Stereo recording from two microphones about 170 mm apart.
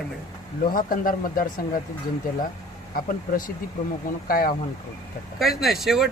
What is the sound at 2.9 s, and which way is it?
Speech, 55° left (ahead or behind).